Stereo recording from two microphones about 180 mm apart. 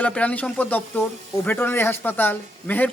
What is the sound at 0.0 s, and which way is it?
Speech, 5° left (ahead or behind).